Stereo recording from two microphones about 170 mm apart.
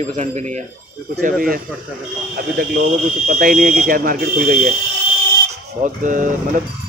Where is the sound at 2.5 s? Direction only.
55° right (ahead or behind).